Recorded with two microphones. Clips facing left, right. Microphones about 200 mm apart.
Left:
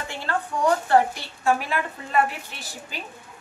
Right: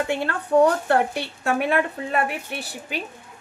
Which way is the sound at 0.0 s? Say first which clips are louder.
Right 4 dB; 60° right (ahead or behind).